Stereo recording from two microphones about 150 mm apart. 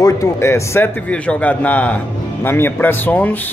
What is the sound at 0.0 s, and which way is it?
A man's voice, 20° left (ahead or behind).